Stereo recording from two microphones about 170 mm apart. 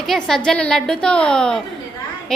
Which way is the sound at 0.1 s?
5° left (ahead or behind).